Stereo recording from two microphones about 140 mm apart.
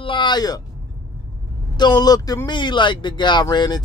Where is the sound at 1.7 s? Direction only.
30° left (ahead or behind).